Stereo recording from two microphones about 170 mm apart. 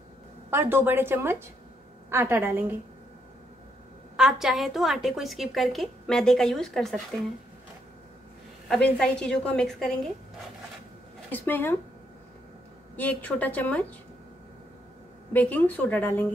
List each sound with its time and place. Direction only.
0.5 s a woman's voice: 10° right (ahead or behind)
4.2 s a woman's voice: 5° right (ahead or behind)
8.6 s a woman's voice: 5° left (ahead or behind)
11.3 s a woman's voice: 10° left (ahead or behind)
12.9 s a woman's voice: 10° left (ahead or behind)
15.3 s a woman's voice: 10° left (ahead or behind)